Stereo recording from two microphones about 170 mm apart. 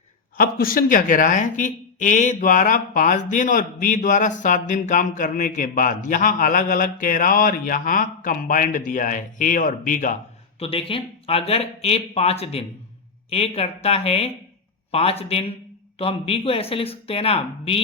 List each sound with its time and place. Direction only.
0.3 s speech: 60° left (ahead or behind)
10.6 s speech: 35° left (ahead or behind)